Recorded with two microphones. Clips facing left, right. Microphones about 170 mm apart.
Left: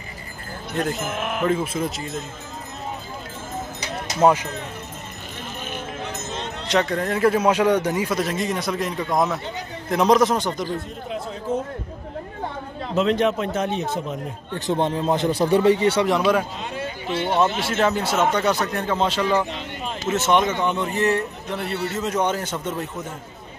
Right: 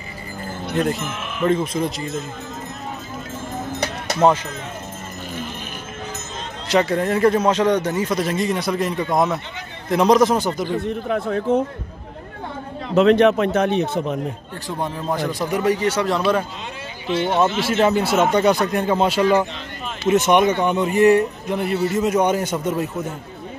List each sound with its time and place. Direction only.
0.7 s a man's voice: centre (ahead or behind)
1.0 s speech: 55° left (ahead or behind)
1.4 s a man's voice: 5° left (ahead or behind)
4.2 s speech: 10° left (ahead or behind)
6.7 s speech: 5° right (ahead or behind)
8.2 s a man's voice: centre (ahead or behind)
10.7 s speech: 65° right (ahead or behind)
12.9 s speech: 65° right (ahead or behind)
14.7 s speech: 20° left (ahead or behind)
17.7 s speech: 10° right (ahead or behind)